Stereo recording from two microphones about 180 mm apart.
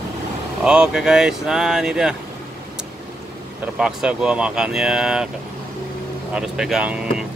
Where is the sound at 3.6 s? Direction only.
5° right (ahead or behind).